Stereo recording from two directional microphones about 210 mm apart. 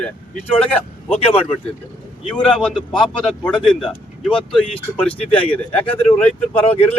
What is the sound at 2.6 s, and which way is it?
A man's voice, centre (ahead or behind).